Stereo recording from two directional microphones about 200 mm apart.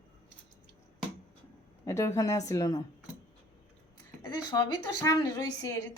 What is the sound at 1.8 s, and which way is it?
A woman's voice, 15° left (ahead or behind).